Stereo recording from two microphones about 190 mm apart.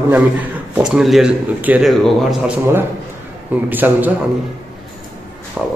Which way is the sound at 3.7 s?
10° right (ahead or behind).